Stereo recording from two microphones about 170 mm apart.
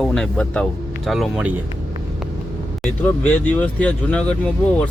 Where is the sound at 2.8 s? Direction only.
10° left (ahead or behind).